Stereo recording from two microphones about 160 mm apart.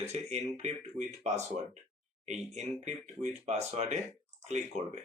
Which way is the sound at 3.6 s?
45° right (ahead or behind).